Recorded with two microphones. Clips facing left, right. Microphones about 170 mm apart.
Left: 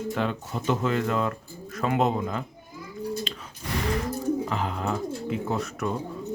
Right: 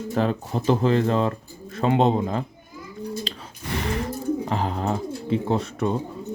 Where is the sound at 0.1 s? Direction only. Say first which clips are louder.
Right 8 dB; 35° right (ahead or behind).